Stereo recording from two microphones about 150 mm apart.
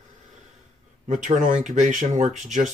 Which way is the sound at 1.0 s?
55° right (ahead or behind).